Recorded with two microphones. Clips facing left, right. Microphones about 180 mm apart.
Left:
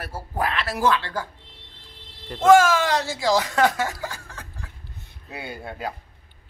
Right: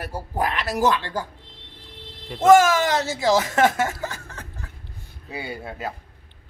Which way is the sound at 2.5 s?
20° right (ahead or behind).